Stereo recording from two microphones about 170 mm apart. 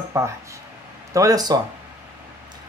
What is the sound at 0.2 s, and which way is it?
A woman's voice, 15° right (ahead or behind).